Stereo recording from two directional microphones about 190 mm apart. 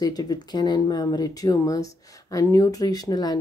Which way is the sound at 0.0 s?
20° left (ahead or behind).